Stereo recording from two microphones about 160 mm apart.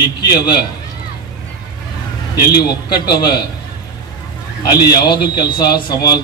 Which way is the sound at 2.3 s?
25° left (ahead or behind).